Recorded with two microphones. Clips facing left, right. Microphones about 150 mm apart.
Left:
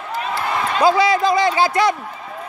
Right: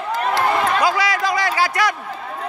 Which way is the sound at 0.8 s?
25° left (ahead or behind).